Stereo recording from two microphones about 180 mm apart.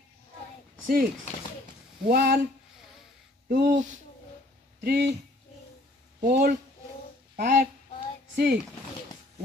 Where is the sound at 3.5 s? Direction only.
45° right (ahead or behind).